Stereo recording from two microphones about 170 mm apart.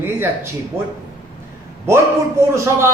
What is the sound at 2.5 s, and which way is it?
Speech, 15° right (ahead or behind).